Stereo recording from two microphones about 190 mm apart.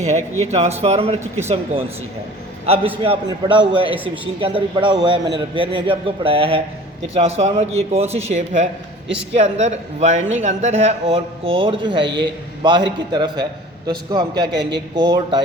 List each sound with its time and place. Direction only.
0.0 s a man's voice: 40° right (ahead or behind)
3.0 s speech: 25° right (ahead or behind)
3.9 s a man's voice: 10° right (ahead or behind)
4.4 s a man's voice: 25° right (ahead or behind)
14.4 s a man's voice: 60° right (ahead or behind)
14.9 s speech: 20° right (ahead or behind)